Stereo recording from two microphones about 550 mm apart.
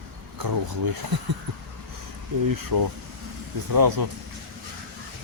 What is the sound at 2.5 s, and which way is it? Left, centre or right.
Speech, right.